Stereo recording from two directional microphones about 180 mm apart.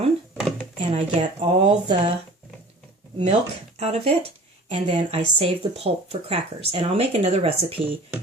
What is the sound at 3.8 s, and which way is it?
Speech, 35° right (ahead or behind).